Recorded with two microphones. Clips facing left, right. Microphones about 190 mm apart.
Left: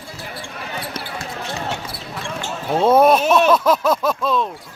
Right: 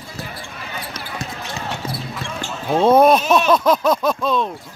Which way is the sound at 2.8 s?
5° left (ahead or behind).